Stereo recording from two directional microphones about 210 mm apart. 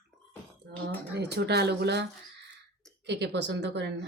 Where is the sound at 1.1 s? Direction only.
50° right (ahead or behind).